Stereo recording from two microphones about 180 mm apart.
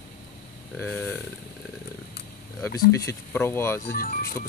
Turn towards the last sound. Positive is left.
turn(degrees=55)  # may be behind; listen again after turning